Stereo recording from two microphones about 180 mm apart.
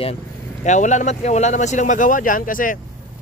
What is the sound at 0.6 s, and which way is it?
Speech, 40° left (ahead or behind).